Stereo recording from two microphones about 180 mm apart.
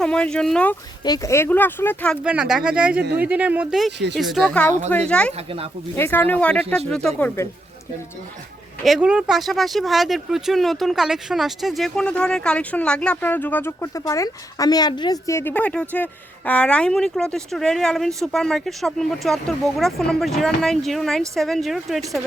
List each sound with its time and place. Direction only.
0.0 s speech: 5° left (ahead or behind)
1.0 s speech: 20° left (ahead or behind)
2.2 s speech: 5° right (ahead or behind)
8.8 s speech: 5° right (ahead or behind)